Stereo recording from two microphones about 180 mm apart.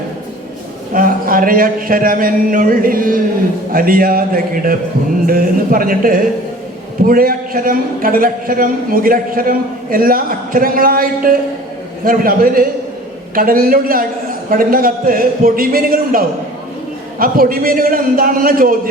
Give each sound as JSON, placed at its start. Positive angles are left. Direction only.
{"t": 0.9, "sound": "a man's voice", "side_deg": -50}